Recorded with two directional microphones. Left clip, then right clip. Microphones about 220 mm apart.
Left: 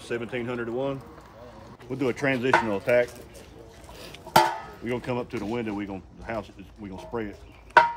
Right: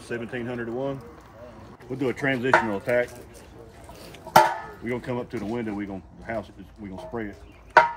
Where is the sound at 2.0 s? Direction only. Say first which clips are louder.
Even; 25° left (ahead or behind).